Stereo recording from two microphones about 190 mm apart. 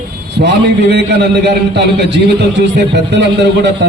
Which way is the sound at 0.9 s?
65° right (ahead or behind).